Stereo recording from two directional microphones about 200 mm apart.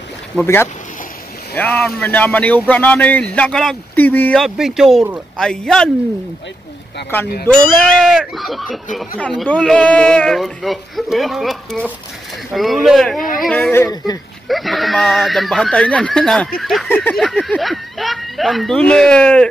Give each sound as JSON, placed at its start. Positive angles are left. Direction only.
{"t": 0.3, "sound": "speech", "side_deg": 0}
{"t": 7.6, "sound": "speech", "side_deg": 5}
{"t": 14.5, "sound": "speech", "side_deg": 0}